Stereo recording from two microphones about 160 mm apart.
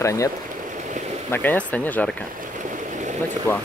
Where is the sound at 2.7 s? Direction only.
50° right (ahead or behind).